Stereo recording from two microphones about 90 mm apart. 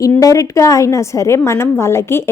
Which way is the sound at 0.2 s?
40° left (ahead or behind).